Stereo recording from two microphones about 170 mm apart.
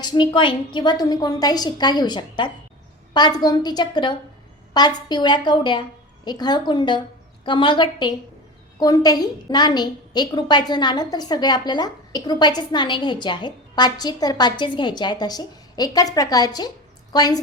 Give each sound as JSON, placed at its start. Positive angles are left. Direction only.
{"t": 0.0, "sound": "a woman's voice", "side_deg": 25}